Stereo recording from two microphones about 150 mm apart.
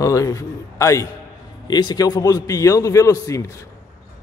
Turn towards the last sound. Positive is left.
turn(degrees=20)  # may be behind; listen again after turning